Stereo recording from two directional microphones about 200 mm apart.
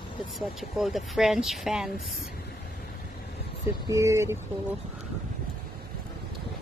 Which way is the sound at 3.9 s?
15° right (ahead or behind).